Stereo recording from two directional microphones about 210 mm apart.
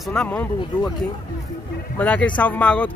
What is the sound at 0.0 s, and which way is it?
Speech, 5° left (ahead or behind).